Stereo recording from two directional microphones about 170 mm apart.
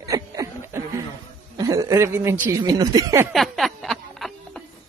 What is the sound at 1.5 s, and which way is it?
Speech, 20° right (ahead or behind).